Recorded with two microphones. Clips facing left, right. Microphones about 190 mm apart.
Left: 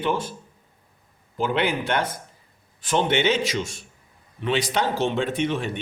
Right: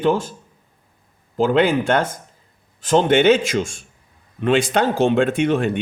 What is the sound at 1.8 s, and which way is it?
Speech, 50° right (ahead or behind).